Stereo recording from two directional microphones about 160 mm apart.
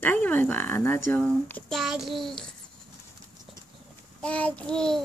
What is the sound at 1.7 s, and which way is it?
Child singing, centre (ahead or behind).